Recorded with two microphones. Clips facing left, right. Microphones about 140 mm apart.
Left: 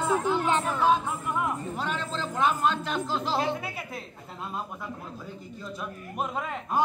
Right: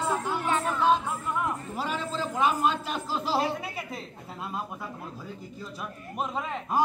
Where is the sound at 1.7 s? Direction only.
5° right (ahead or behind).